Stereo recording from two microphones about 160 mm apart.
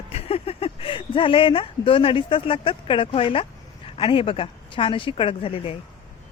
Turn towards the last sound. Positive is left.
turn(degrees=35)  # may be behind; listen again after turning